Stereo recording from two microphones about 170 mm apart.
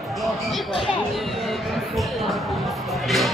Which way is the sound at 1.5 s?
Centre (ahead or behind).